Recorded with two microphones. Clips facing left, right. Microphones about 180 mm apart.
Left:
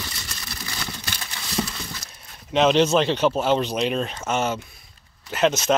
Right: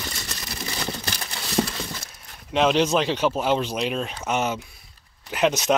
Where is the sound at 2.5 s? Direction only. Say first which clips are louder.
Left 2 dB; 5° right (ahead or behind).